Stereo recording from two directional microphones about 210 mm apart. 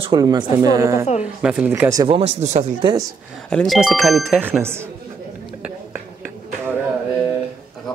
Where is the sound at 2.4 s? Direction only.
35° right (ahead or behind).